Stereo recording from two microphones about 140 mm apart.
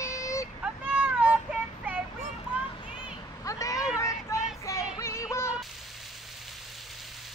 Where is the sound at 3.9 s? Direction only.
20° left (ahead or behind).